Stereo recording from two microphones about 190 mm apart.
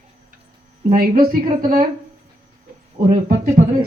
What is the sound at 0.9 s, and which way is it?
Speech, 50° right (ahead or behind).